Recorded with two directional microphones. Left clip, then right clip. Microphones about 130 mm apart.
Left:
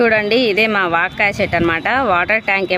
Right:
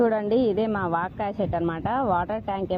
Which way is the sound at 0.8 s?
80° left.